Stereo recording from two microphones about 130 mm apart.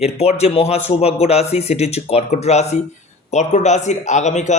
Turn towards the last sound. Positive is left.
turn(degrees=65)  # may be behind; listen again after turning